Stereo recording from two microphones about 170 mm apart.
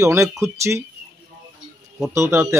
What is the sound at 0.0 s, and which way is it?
Speech, 15° right (ahead or behind).